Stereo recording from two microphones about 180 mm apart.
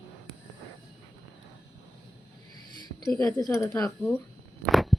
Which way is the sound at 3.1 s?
20° left (ahead or behind).